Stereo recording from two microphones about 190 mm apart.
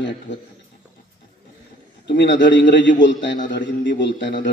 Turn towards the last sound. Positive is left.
turn(degrees=70)  # may be behind; listen again after turning